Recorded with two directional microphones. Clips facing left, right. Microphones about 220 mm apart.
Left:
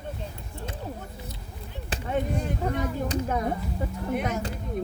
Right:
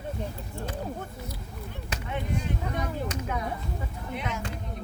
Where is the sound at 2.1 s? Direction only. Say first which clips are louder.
Left 4 dB; 45° left (ahead or behind).